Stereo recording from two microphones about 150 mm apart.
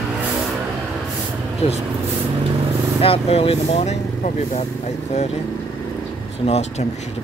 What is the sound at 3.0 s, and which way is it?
Speech, 40° left (ahead or behind).